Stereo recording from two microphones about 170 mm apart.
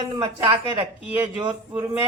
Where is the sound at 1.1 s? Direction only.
15° right (ahead or behind).